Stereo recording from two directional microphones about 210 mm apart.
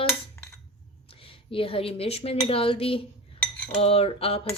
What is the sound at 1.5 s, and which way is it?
Cutlery, 25° left (ahead or behind).